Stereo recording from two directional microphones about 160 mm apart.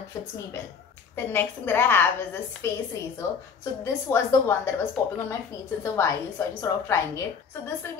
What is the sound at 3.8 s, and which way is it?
Speech, 15° left (ahead or behind).